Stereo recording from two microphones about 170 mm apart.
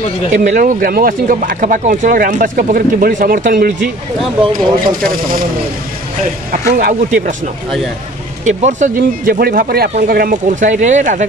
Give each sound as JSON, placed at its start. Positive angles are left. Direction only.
{"t": 0.3, "sound": "speech", "side_deg": -50}
{"t": 5.0, "sound": "speech", "side_deg": -55}
{"t": 6.5, "sound": "speech", "side_deg": -55}
{"t": 8.5, "sound": "speech", "side_deg": -45}